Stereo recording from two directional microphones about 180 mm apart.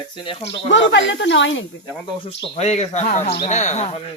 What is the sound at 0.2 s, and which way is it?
Speech, 30° left (ahead or behind).